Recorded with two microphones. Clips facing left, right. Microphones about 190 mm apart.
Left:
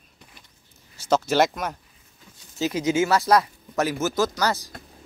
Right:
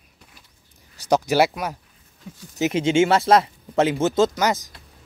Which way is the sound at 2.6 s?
25° right (ahead or behind).